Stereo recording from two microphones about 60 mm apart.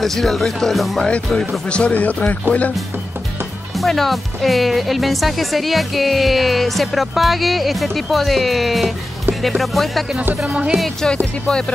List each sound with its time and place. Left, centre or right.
0.0 s speech: centre
1.0 s speech: centre
3.7 s speech: centre
10.2 s music: right
11.4 s speech: centre